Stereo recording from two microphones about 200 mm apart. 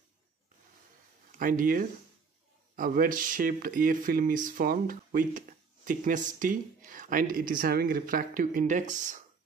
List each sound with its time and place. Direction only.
1.4 s speech: 45° right (ahead or behind)